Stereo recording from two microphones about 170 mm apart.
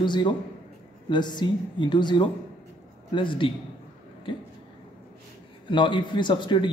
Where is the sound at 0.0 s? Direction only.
25° left (ahead or behind).